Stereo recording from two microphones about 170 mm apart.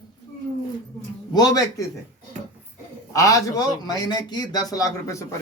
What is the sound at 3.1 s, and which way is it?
A man's voice, 20° left (ahead or behind).